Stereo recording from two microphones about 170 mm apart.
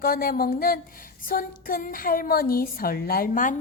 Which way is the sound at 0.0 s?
60° left (ahead or behind).